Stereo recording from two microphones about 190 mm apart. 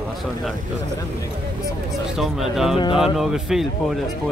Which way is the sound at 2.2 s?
Centre (ahead or behind).